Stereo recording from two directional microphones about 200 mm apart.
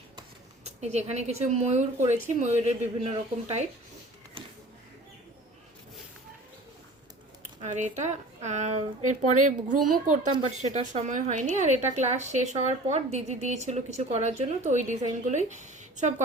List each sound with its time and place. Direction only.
0.6 s a woman's voice: 35° right (ahead or behind)
7.6 s a woman's voice: 35° right (ahead or behind)